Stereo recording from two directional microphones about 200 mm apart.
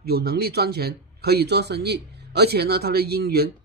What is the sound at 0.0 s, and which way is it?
A man's voice, 50° right (ahead or behind).